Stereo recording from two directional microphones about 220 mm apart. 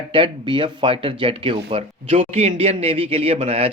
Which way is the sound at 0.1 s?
25° right (ahead or behind).